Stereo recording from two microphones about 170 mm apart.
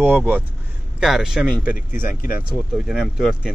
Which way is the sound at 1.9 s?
15° right (ahead or behind).